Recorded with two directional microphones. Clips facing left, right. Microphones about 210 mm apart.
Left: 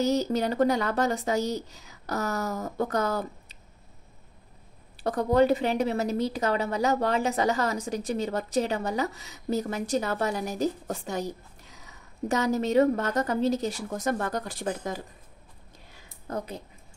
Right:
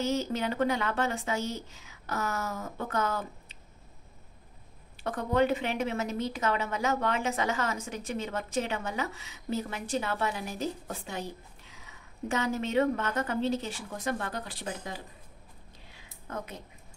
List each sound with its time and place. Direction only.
0.0 s a woman's voice: 40° left (ahead or behind)
4.9 s a woman's voice: 35° left (ahead or behind)
15.9 s a sound: 40° left (ahead or behind)